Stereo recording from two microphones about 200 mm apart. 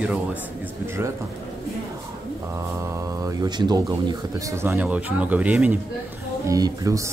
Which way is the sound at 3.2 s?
20° right (ahead or behind).